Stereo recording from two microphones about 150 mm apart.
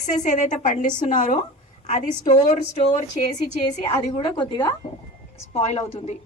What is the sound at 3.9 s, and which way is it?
Speech, 30° left (ahead or behind).